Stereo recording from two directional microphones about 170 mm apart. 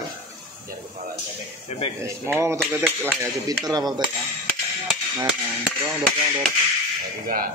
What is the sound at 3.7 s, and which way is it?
Dishes, 25° right (ahead or behind).